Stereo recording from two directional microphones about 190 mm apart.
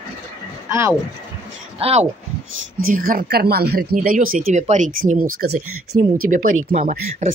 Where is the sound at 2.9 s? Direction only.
50° right (ahead or behind).